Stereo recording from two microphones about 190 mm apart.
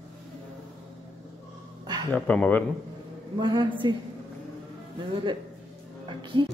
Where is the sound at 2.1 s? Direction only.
5° left (ahead or behind).